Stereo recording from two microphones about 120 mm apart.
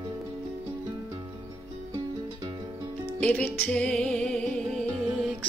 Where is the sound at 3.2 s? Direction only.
10° left (ahead or behind).